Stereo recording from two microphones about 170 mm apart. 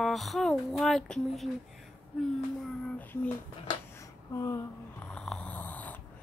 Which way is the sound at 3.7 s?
20° left (ahead or behind).